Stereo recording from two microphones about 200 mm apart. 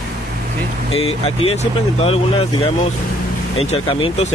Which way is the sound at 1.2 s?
30° left (ahead or behind).